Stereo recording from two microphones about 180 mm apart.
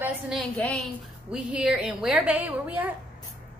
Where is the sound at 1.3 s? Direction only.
5° right (ahead or behind).